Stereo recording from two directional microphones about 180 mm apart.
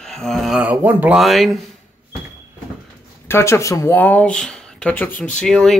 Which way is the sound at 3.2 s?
15° left (ahead or behind).